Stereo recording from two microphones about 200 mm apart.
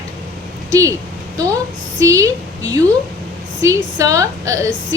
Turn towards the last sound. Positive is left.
turn(degrees=-15)  # may be behind; listen again after turning